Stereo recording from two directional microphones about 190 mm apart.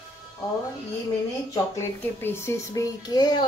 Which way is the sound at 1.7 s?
10° left (ahead or behind).